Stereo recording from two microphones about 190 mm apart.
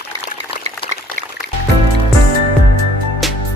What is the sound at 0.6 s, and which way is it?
Liquid, 40° right (ahead or behind).